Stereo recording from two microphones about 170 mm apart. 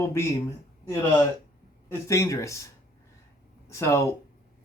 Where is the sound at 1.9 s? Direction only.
15° left (ahead or behind).